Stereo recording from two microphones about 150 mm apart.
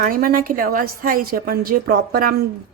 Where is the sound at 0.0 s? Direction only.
70° right (ahead or behind).